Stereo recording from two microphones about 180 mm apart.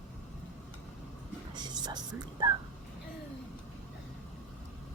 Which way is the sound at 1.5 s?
25° right (ahead or behind).